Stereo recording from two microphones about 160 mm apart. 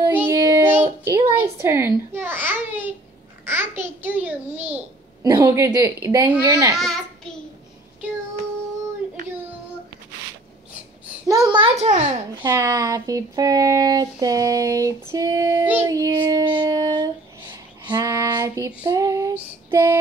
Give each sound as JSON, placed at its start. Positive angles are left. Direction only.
{"t": 0.0, "sound": "child singing", "side_deg": -15}
{"t": 0.4, "sound": "a sound", "side_deg": -20}
{"t": 2.1, "sound": "babbling", "side_deg": -15}
{"t": 3.4, "sound": "a child's voice", "side_deg": -15}
{"t": 6.7, "sound": "a child's voice", "side_deg": 0}
{"t": 11.2, "sound": "a child's voice", "side_deg": -25}
{"t": 11.7, "sound": "a child's voice", "side_deg": -45}
{"t": 12.4, "sound": "speech", "side_deg": -20}
{"t": 15.9, "sound": "child singing", "side_deg": -20}
{"t": 18.9, "sound": "speech", "side_deg": -20}
{"t": 19.3, "sound": "female singing", "side_deg": -15}